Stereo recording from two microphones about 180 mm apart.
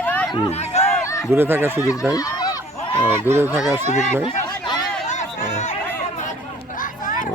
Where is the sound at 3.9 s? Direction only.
40° left (ahead or behind).